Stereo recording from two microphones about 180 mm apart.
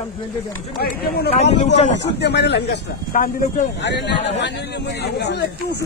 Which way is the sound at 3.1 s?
50° left (ahead or behind).